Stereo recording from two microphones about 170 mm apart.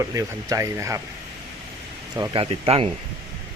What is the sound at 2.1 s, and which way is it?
Speech, 25° right (ahead or behind).